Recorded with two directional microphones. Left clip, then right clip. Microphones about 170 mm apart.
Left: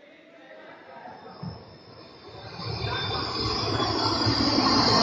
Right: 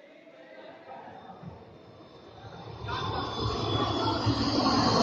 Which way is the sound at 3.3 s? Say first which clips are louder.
Left 4 dB; 30° left (ahead or behind).